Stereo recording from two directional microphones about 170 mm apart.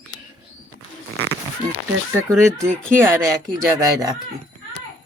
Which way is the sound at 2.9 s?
15° right (ahead or behind).